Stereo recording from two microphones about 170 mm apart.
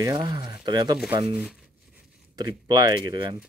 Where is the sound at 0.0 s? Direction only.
25° right (ahead or behind).